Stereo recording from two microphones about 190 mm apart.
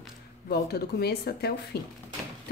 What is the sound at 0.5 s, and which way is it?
A woman's voice, 55° left (ahead or behind).